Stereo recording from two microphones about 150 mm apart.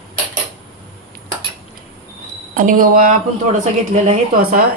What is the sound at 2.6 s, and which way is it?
Speech, 70° right (ahead or behind).